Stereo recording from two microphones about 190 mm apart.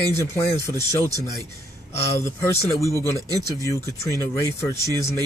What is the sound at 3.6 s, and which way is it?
Speech, 15° left (ahead or behind).